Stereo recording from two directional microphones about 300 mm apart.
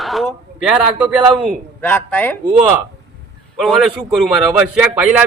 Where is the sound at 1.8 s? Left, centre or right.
Centre.